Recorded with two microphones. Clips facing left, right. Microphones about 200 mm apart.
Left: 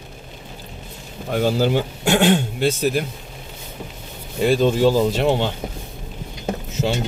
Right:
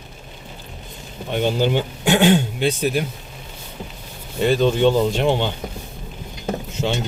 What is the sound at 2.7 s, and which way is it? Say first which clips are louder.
Speech: left 1 dB; 45° left (ahead or behind).